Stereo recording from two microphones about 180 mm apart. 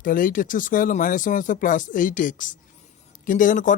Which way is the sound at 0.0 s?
50° left (ahead or behind).